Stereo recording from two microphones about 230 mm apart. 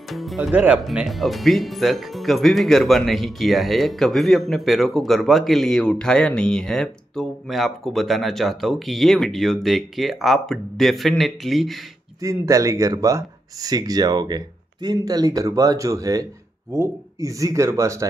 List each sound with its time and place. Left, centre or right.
0.1 s speech: centre
12.2 s speech: centre